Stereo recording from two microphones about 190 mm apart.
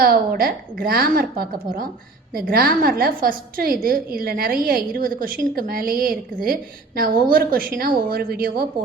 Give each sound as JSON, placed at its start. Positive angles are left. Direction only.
{"t": 0.0, "sound": "a woman's voice", "side_deg": -50}